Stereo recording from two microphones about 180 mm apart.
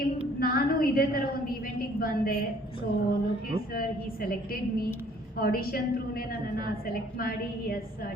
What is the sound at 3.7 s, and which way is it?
A woman's voice, 55° left (ahead or behind).